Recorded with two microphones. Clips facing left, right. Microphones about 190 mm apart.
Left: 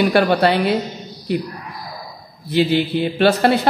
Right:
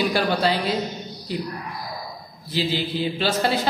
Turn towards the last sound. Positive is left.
turn(degrees=60)  # may be behind; listen again after turning